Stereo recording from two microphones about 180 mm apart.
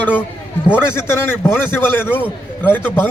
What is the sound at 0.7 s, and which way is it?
A man's voice, 10° left (ahead or behind).